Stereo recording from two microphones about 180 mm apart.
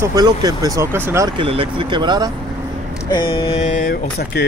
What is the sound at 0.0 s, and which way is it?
Speech, 20° right (ahead or behind).